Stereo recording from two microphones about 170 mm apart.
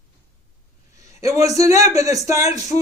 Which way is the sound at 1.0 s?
15° right (ahead or behind).